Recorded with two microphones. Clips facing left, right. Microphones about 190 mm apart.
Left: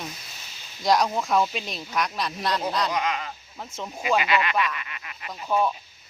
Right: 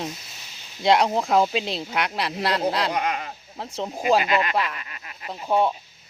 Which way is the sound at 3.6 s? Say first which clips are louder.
Right 5 dB; 35° right (ahead or behind).